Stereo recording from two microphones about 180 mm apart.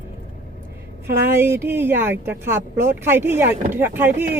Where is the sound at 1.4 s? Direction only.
15° right (ahead or behind).